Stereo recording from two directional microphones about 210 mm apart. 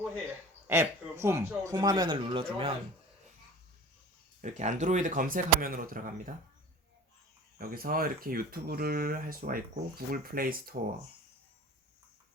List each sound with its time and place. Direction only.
0.7 s a man's voice: 15° right (ahead or behind)
4.4 s speech: 35° right (ahead or behind)
7.6 s speech: 45° right (ahead or behind)